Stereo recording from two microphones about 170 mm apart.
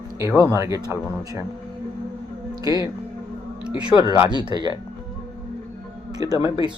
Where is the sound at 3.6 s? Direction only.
5° right (ahead or behind).